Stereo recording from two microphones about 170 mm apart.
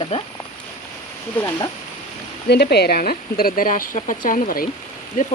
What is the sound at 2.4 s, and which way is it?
Speech, 75° left (ahead or behind).